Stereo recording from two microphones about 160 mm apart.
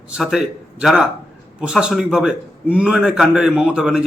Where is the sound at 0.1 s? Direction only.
5° right (ahead or behind).